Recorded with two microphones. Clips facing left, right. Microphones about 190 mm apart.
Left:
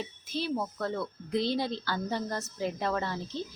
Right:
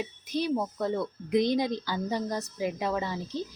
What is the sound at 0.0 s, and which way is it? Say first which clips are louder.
A woman's voice: right 4 dB; 15° right (ahead or behind).